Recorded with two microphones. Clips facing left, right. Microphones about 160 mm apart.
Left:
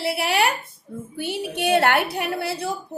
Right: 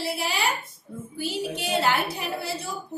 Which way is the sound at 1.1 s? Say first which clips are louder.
Left 2 dB; 65° left (ahead or behind).